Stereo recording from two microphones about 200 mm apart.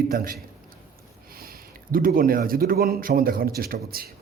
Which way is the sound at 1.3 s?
45° right (ahead or behind).